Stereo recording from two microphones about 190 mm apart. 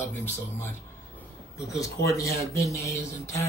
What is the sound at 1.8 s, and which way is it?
Speech, 15° left (ahead or behind).